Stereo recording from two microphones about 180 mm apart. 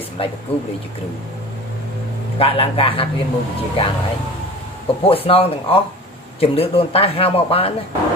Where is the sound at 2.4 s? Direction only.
30° left (ahead or behind).